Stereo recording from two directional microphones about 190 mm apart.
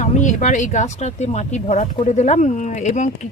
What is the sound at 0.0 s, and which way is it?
Speech, 40° left (ahead or behind).